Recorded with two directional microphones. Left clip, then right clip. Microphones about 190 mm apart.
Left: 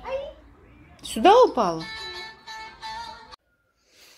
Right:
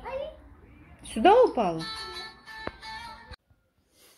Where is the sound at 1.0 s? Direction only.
15° left (ahead or behind).